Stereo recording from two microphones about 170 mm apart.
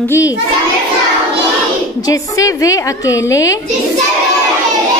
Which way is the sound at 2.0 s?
20° left (ahead or behind).